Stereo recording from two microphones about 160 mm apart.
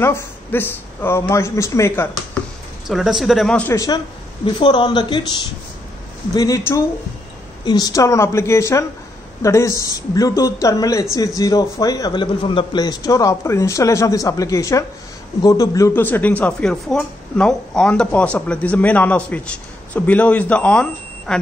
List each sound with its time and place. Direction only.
0.0 s speech: 15° left (ahead or behind)
2.9 s speech: centre (ahead or behind)
3.7 s a man's voice: 20° left (ahead or behind); by 21.4 s 5° left (ahead or behind)